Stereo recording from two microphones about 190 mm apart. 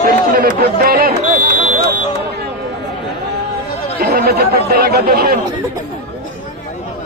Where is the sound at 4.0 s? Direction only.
50° right (ahead or behind).